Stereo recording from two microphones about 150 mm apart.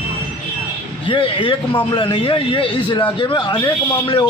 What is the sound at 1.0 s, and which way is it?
A man's voice, 35° left (ahead or behind).